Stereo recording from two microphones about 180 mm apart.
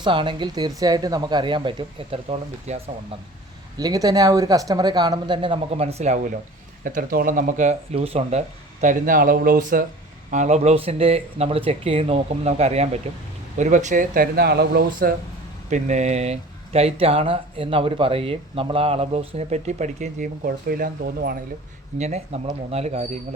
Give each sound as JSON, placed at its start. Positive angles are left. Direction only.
{"t": 0.0, "sound": "speech", "side_deg": -25}
{"t": 3.8, "sound": "speech", "side_deg": -20}
{"t": 6.8, "sound": "speech", "side_deg": -50}
{"t": 15.7, "sound": "speech", "side_deg": -40}
{"t": 21.9, "sound": "speech", "side_deg": -40}